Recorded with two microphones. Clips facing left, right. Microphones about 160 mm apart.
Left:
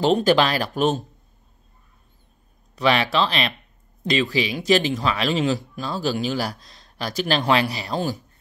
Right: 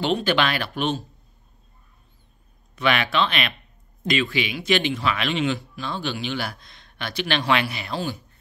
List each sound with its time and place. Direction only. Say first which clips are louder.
0.0 s speech: left 4 dB; 40° left (ahead or behind)
2.7 s speech: left 3 dB; 30° left (ahead or behind)